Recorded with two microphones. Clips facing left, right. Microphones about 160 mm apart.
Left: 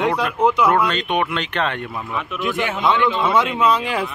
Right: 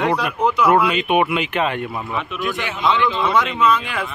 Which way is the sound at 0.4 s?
15° left (ahead or behind).